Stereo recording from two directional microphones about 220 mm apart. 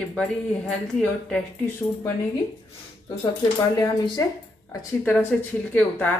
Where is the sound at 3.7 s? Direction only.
15° left (ahead or behind).